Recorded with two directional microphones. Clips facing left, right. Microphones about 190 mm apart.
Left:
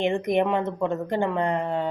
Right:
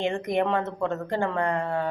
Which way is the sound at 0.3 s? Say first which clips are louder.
Left 2 dB; 15° left (ahead or behind).